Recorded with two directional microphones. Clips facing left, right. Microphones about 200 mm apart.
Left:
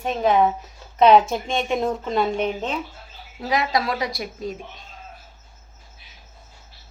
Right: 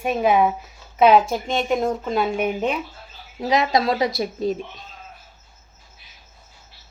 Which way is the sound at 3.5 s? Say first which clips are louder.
Right 3 dB; 20° right (ahead or behind).